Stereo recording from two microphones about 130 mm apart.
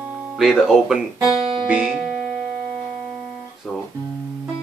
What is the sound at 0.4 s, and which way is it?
Speech, 5° right (ahead or behind).